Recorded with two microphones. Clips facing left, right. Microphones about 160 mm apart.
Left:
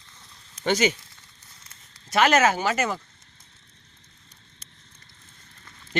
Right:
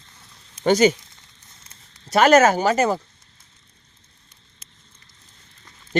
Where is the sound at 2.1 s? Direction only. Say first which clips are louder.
Right 6 dB; 40° right (ahead or behind).